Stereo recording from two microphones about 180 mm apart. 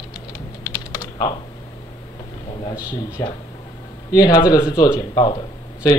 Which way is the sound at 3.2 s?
15° left (ahead or behind).